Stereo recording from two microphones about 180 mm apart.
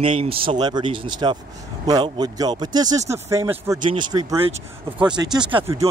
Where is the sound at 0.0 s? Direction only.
30° right (ahead or behind).